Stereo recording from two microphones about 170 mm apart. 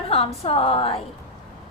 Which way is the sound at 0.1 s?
35° left (ahead or behind).